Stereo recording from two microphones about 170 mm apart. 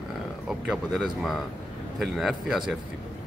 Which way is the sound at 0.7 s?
Centre (ahead or behind).